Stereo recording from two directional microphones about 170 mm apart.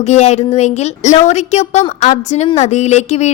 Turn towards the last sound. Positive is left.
turn(degrees=40)  # may be behind; listen again after turning